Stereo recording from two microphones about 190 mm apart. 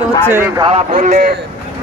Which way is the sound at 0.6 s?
35° right (ahead or behind).